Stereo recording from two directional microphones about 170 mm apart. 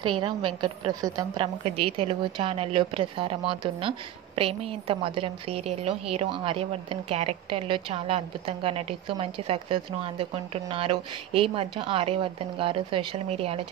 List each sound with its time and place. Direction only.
0.0 s a woman's voice: 30° right (ahead or behind)